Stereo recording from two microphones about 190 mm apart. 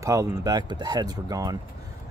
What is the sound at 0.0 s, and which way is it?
Speech, 15° right (ahead or behind).